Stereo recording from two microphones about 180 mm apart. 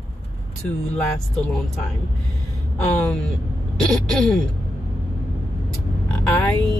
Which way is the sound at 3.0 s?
5° left (ahead or behind).